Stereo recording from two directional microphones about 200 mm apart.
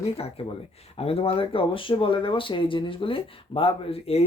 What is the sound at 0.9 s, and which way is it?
Speech, 30° left (ahead or behind).